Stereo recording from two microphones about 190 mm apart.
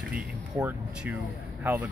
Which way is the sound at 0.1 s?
5° right (ahead or behind).